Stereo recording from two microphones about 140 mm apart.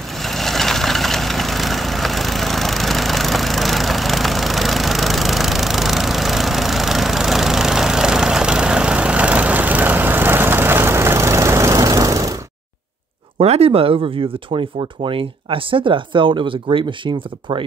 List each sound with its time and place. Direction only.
0.2 s vehicle: centre (ahead or behind); by 12.4 s 25° right (ahead or behind)
13.4 s speech: 45° right (ahead or behind)